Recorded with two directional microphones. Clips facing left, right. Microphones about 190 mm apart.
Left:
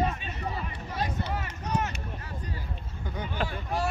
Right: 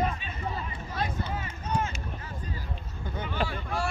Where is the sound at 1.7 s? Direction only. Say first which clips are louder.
Even; 70° left (ahead or behind).